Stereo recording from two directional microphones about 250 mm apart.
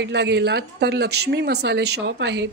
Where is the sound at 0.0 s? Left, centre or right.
Right.